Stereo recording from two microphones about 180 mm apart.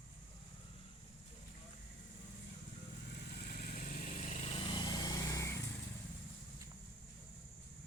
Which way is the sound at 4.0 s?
45° left (ahead or behind).